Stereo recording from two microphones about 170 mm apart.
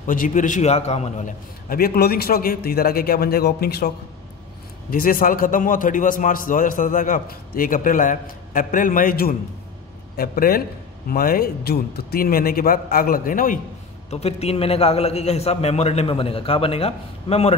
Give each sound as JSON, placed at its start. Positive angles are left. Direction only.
{"t": 0.0, "sound": "a man's voice", "side_deg": 50}
{"t": 1.7, "sound": "a man's voice", "side_deg": 60}
{"t": 4.9, "sound": "a man's voice", "side_deg": 55}
{"t": 14.1, "sound": "a man's voice", "side_deg": 35}